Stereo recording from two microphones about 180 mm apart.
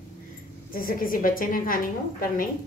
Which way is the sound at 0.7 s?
55° left (ahead or behind).